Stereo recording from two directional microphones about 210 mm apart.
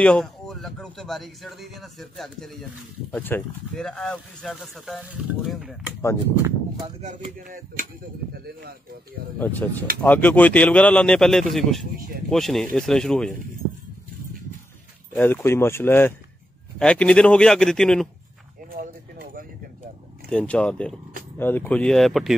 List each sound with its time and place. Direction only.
0.0 s speech: 5° left (ahead or behind)
6.3 s speech: 15° right (ahead or behind)
7.0 s speech: 35° right (ahead or behind)
9.4 s speech: 10° left (ahead or behind)
15.1 s speech: 10° left (ahead or behind)
18.7 s a sound: 45° right (ahead or behind)
20.2 s speech: 5° left (ahead or behind)